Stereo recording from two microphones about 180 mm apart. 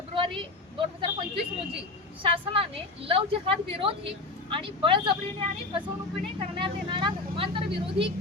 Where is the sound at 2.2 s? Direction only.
30° right (ahead or behind).